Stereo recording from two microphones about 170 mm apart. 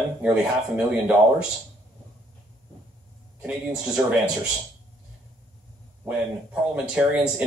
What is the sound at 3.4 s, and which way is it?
Speech, 5° right (ahead or behind).